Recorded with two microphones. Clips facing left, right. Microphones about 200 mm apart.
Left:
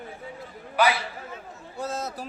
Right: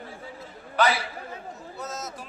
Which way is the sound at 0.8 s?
10° left (ahead or behind).